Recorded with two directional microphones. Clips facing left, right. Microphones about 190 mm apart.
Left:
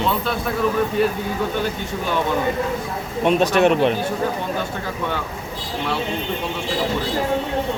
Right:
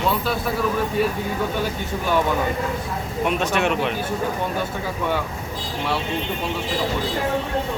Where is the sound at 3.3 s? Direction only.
35° left (ahead or behind).